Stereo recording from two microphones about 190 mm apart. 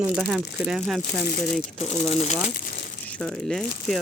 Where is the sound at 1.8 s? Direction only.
35° left (ahead or behind).